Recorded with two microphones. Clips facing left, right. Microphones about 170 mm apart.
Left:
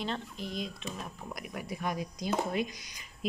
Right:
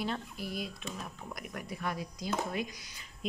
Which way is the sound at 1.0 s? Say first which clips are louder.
Left 1 dB; 10° left (ahead or behind).